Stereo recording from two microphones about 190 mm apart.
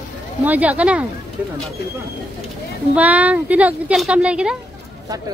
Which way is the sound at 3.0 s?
10° right (ahead or behind).